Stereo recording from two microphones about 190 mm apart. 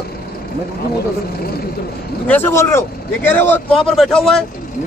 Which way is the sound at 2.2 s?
10° left (ahead or behind).